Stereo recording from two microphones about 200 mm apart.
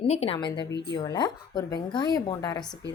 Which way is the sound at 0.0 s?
30° left (ahead or behind).